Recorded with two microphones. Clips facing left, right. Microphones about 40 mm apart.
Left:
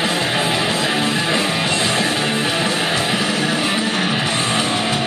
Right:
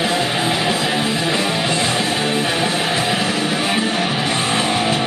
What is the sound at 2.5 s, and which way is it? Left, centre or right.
Music, right.